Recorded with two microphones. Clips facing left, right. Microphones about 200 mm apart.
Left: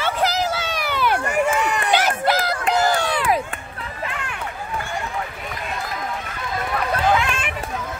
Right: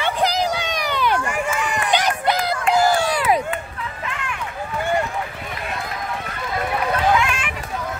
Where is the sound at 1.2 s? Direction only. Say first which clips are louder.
Left 3 dB; 40° left (ahead or behind).